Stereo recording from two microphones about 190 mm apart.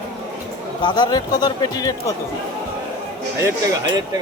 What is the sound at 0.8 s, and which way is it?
Speech, 20° left (ahead or behind).